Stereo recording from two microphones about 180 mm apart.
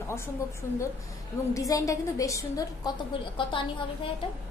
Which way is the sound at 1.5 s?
20° left (ahead or behind).